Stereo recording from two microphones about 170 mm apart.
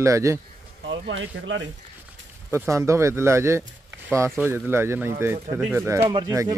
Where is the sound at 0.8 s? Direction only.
90° right.